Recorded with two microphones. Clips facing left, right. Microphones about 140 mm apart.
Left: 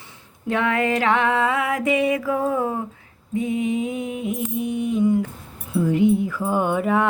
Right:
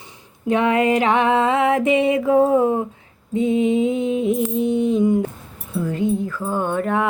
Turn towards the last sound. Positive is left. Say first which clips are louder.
# even
turn(degrees=0)  # may be behind; listen again after turning